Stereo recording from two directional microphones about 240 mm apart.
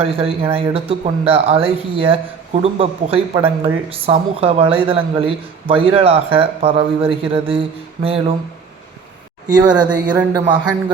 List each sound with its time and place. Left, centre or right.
0.0 s speech: right
9.5 s speech: centre